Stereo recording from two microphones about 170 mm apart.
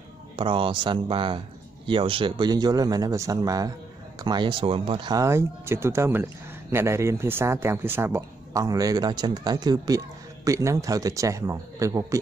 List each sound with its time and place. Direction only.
0.4 s speech: 30° right (ahead or behind)